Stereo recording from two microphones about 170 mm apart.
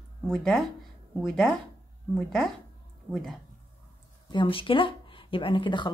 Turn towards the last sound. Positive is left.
turn(degrees=25)  # may be behind; listen again after turning